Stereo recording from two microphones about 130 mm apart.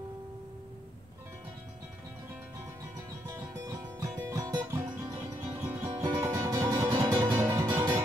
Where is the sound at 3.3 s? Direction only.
25° right (ahead or behind).